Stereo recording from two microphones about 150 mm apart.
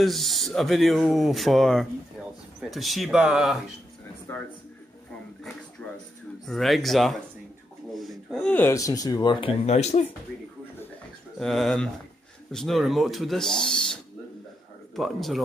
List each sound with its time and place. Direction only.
0.0 s speech: centre (ahead or behind)
6.4 s speech: centre (ahead or behind); by 10.0 s 45° left (ahead or behind)
11.3 s speech: centre (ahead or behind)
15.0 s speech: centre (ahead or behind)